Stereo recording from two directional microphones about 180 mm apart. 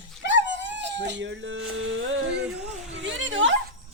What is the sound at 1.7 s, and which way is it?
Music, 90° right.